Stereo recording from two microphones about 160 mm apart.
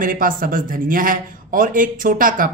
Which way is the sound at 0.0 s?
60° right (ahead or behind).